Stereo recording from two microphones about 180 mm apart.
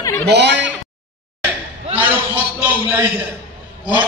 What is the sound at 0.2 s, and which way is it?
Speech, 70° right (ahead or behind).